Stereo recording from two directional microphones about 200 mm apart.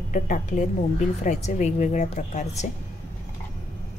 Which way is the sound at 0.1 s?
40° left (ahead or behind).